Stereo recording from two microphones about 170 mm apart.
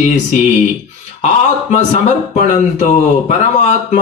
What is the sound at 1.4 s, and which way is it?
A man's voice, 45° left (ahead or behind).